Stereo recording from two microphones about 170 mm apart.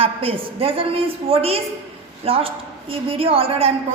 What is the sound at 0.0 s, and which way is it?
A woman's voice, 35° right (ahead or behind).